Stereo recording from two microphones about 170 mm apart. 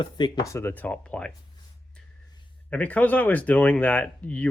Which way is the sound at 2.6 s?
10° left (ahead or behind).